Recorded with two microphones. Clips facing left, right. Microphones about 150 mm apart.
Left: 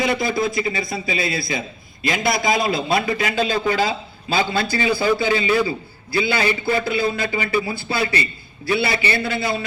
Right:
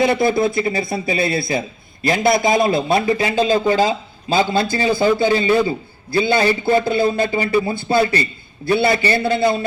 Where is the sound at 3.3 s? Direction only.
40° right (ahead or behind).